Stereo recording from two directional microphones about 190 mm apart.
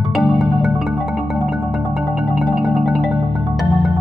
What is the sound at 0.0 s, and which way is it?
Marimba, centre (ahead or behind).